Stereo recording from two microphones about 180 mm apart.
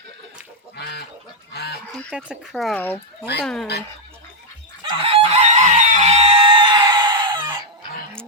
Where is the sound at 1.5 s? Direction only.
65° left (ahead or behind).